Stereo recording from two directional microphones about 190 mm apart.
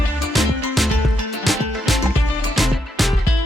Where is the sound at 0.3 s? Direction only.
Centre (ahead or behind).